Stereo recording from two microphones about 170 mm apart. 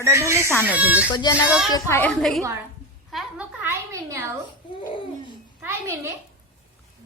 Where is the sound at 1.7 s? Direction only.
15° left (ahead or behind).